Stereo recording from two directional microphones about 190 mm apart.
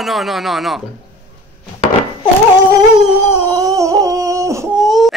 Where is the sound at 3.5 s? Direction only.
20° right (ahead or behind).